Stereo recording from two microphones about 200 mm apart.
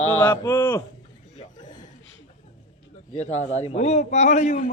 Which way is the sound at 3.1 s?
35° left (ahead or behind).